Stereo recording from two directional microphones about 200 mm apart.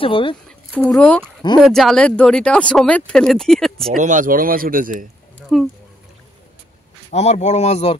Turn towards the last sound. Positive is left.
turn(degrees=35)  # may be behind; listen again after turning